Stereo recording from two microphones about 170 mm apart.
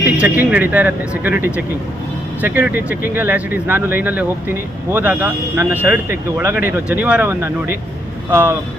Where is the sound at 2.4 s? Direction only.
10° right (ahead or behind).